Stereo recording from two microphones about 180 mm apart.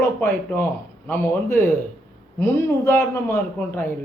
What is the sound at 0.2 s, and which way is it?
A man's voice, 10° left (ahead or behind).